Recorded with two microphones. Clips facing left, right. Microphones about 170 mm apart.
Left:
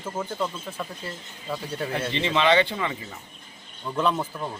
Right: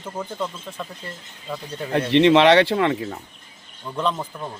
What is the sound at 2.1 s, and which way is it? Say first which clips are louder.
A man's voice: right 9 dB; 70° right (ahead or behind).